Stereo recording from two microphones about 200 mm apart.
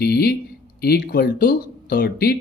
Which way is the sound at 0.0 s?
50° left (ahead or behind).